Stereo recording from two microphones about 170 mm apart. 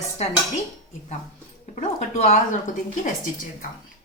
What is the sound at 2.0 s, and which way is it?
Speech, 40° left (ahead or behind).